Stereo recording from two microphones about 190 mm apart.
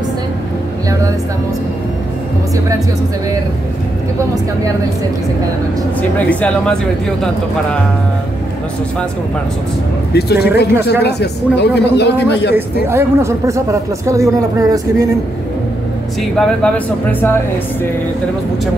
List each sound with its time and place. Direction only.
6.1 s speech: 5° left (ahead or behind)
10.1 s a man's voice: 60° left (ahead or behind)
12.8 s speech: 15° right (ahead or behind)
16.2 s speech: 5° left (ahead or behind)